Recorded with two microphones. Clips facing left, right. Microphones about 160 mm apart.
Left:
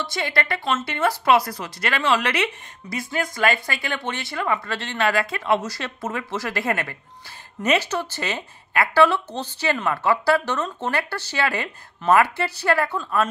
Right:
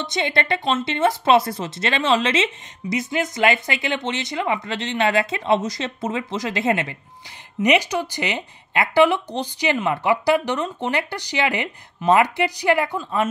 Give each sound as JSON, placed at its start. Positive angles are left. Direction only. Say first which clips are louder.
{"t": 0.0, "sound": "speech", "louder": "right 2 dB", "side_deg": -20}